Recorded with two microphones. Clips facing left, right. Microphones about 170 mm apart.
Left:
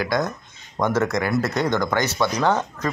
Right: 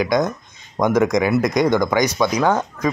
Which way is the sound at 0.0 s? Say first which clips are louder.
Right 5 dB; 20° right (ahead or behind).